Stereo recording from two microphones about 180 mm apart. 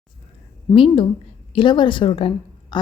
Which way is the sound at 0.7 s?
30° left (ahead or behind).